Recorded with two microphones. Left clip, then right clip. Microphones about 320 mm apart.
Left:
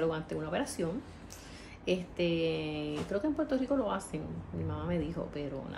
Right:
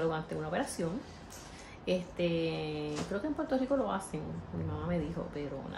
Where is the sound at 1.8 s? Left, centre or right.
Centre.